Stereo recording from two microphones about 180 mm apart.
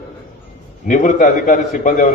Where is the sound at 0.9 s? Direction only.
45° left (ahead or behind).